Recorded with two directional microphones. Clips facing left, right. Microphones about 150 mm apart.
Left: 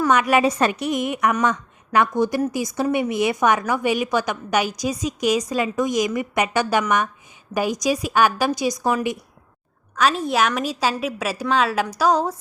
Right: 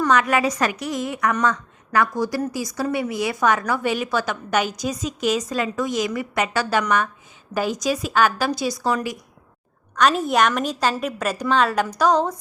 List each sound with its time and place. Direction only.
0.1 s a woman's voice: 15° left (ahead or behind)
0.4 s a woman's voice: 30° left (ahead or behind)
9.9 s a woman's voice: centre (ahead or behind)